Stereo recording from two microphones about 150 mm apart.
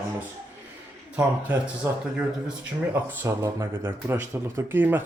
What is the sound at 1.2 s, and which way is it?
Speech, 15° right (ahead or behind).